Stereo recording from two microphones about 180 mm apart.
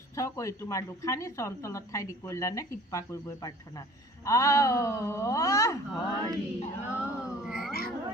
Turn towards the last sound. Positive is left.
turn(degrees=0)  # may be behind; listen again after turning